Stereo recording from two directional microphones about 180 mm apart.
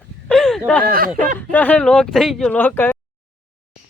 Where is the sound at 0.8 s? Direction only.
55° right (ahead or behind).